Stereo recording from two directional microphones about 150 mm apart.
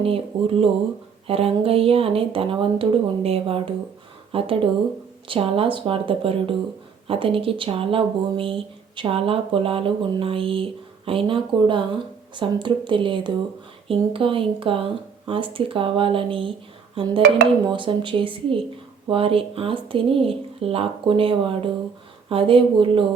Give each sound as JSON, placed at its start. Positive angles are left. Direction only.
{"t": 0.0, "sound": "speech", "side_deg": -40}